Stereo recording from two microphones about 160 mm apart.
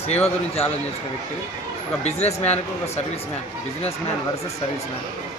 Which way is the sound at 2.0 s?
45° left (ahead or behind).